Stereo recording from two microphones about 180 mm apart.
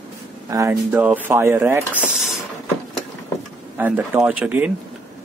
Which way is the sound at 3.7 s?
10° right (ahead or behind).